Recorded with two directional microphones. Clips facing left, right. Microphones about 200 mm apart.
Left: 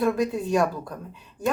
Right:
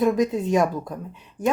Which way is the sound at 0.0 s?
20° right (ahead or behind).